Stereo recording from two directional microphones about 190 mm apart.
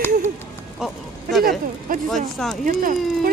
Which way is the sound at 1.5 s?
45° right (ahead or behind).